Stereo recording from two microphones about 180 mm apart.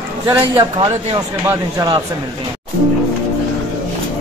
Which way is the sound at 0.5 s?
30° right (ahead or behind).